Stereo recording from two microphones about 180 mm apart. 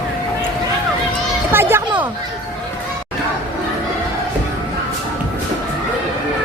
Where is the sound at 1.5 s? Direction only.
15° right (ahead or behind).